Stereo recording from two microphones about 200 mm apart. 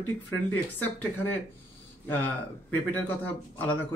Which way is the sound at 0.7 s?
10° left (ahead or behind).